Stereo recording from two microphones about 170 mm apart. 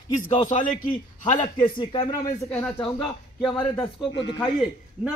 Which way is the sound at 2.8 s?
25° left (ahead or behind).